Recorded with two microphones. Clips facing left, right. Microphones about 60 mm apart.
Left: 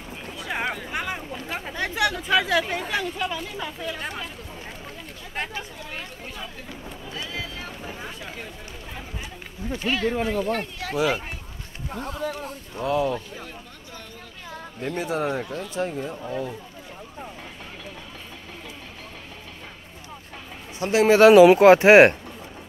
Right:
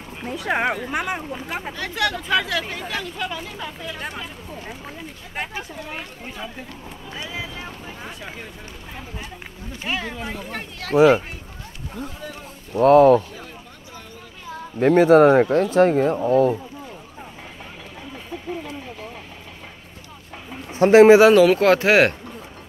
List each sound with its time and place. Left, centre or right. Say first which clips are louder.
0.5 s speech: right 6 dB; right
0.7 s speech: right 4 dB; centre
1.8 s speech: left 1 dB; centre
2.1 s speech: left 1 dB; centre
5.3 s speech: right 1 dB; centre
9.8 s speech: left 4 dB; centre
11.0 s speech: right 10 dB; right
12.0 s speech: left 4 dB; left
12.8 s speech: right 12 dB; right
14.8 s speech: right 15 dB; right
20.7 s speech: right 10 dB; right
21.2 s speech: left 1 dB; centre
21.5 s speech: left 4 dB; centre